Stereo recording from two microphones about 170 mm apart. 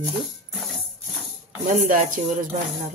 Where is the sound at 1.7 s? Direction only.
50° right (ahead or behind).